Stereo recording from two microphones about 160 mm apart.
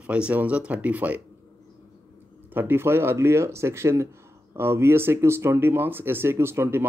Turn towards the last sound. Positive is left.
turn(degrees=-15)  # may be behind; listen again after turning